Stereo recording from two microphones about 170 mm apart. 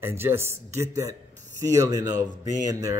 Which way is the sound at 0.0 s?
15° right (ahead or behind).